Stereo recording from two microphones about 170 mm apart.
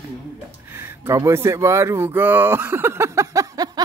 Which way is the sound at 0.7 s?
15° right (ahead or behind).